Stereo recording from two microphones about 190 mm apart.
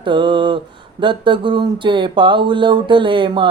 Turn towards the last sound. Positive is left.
turn(degrees=-25)  # may be behind; listen again after turning